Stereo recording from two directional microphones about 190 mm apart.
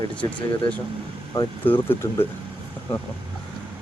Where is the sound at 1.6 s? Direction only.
10° left (ahead or behind).